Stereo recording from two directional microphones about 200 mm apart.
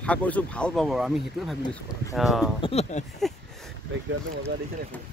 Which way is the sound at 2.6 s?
30° left (ahead or behind).